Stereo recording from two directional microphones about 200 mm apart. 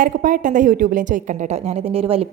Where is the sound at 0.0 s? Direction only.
45° right (ahead or behind).